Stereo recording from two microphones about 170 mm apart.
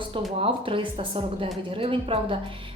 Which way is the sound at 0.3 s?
35° right (ahead or behind).